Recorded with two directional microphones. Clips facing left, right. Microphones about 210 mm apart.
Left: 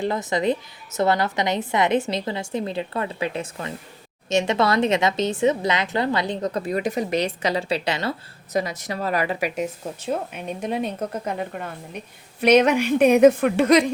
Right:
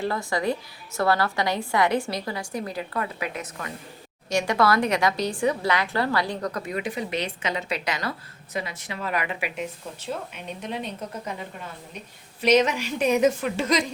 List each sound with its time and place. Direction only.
0.0 s a woman's voice: 20° left (ahead or behind)
8.5 s a woman's voice: 40° left (ahead or behind); by 13.9 s 60° left (ahead or behind)